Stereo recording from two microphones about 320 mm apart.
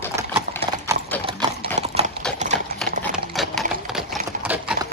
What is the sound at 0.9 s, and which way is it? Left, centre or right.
Clip-clop, centre.